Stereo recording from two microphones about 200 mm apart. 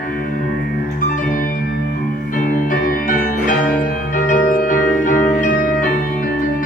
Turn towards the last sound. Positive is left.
turn(degrees=40)  # may be behind; listen again after turning